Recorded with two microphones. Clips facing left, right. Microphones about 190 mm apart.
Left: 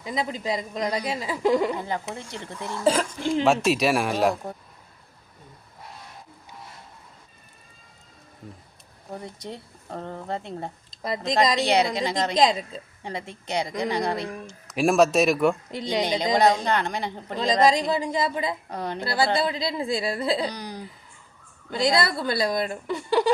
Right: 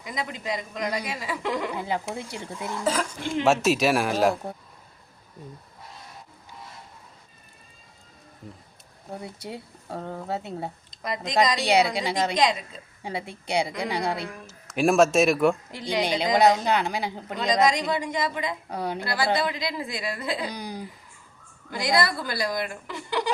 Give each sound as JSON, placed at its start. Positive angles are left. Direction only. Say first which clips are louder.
{"t": 0.0, "sound": "speech", "louder": "left 4 dB", "side_deg": 30}
{"t": 1.7, "sound": "speech", "louder": "right 1 dB", "side_deg": -10}
{"t": 2.8, "sound": "speech", "louder": "left 5 dB", "side_deg": 30}
{"t": 3.4, "sound": "speech", "louder": "right 1 dB", "side_deg": 0}
{"t": 9.2, "sound": "speech", "louder": "even", "side_deg": -10}
{"t": 12.4, "sound": "speech", "louder": "left 4 dB", "side_deg": 25}
{"t": 13.0, "sound": "speech", "louder": "right 2 dB", "side_deg": -10}
{"t": 17.3, "sound": "speech", "louder": "left 2 dB", "side_deg": 25}
{"t": 18.7, "sound": "speech", "louder": "right 1 dB", "side_deg": -10}
{"t": 18.9, "sound": "speech", "louder": "left 3 dB", "side_deg": 25}
{"t": 20.5, "sound": "speech", "louder": "right 1 dB", "side_deg": -10}
{"t": 21.7, "sound": "speech", "louder": "left 2 dB", "side_deg": 25}